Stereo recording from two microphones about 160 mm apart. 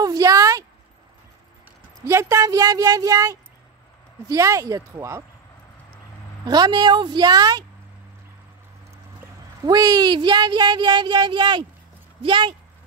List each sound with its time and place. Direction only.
0.0 s a sound: 25° right (ahead or behind)
2.0 s speech: 15° right (ahead or behind)
6.4 s speech: 25° right (ahead or behind)
9.7 s speech: 25° right (ahead or behind)